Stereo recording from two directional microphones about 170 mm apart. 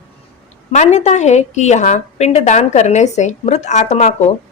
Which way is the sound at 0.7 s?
45° left (ahead or behind).